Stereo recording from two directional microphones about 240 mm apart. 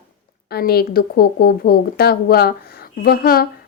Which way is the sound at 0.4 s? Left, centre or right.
Left.